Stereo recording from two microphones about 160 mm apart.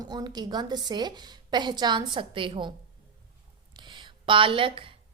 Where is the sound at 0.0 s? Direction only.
25° right (ahead or behind).